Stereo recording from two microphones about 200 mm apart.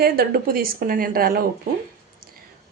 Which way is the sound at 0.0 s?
50° right (ahead or behind).